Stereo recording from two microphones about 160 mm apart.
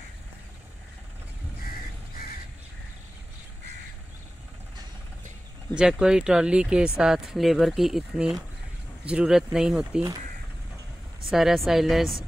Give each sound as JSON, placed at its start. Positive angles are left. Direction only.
{"t": 1.6, "sound": "crow", "side_deg": 70}
{"t": 5.8, "sound": "speech", "side_deg": -5}
{"t": 11.2, "sound": "speech", "side_deg": 0}